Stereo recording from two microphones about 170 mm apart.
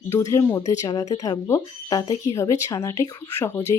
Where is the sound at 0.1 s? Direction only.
15° left (ahead or behind).